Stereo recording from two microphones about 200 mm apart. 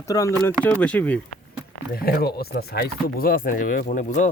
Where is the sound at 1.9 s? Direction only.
50° left (ahead or behind).